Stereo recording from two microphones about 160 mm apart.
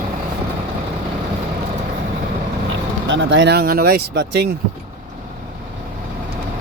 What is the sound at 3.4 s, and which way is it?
Speech, 75° right (ahead or behind).